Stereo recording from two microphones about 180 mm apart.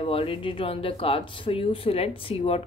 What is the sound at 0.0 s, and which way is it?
A woman's voice, 30° left (ahead or behind).